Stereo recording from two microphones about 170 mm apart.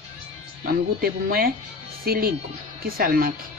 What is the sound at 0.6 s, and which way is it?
Speech, 60° right (ahead or behind).